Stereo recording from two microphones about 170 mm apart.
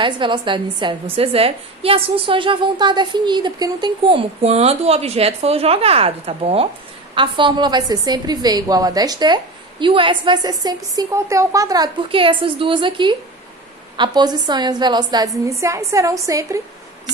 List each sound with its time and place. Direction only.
0.0 s a woman's voice: 30° right (ahead or behind)